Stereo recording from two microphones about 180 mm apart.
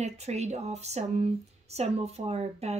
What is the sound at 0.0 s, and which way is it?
A woman's voice, 40° right (ahead or behind).